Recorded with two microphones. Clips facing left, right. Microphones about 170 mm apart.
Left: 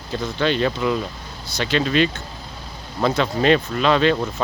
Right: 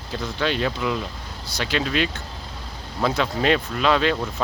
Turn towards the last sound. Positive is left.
turn(degrees=-5)  # may be behind; listen again after turning